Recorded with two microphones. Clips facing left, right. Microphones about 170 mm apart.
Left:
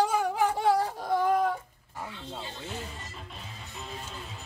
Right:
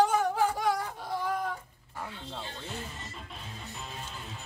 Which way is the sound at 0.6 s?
30° left (ahead or behind).